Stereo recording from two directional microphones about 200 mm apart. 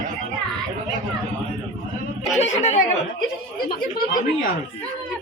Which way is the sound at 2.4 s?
35° left (ahead or behind).